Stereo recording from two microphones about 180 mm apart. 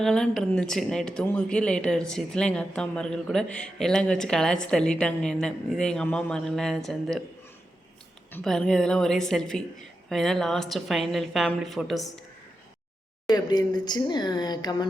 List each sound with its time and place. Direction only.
0.0 s a woman's voice: centre (ahead or behind)
8.3 s a woman's voice: 5° left (ahead or behind)
13.2 s speech: 20° left (ahead or behind)